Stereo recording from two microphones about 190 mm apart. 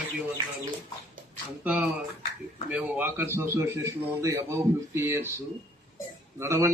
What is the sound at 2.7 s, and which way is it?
A man's voice, 5° right (ahead or behind).